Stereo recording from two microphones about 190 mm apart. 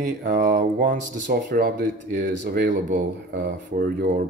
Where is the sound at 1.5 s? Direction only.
55° right (ahead or behind).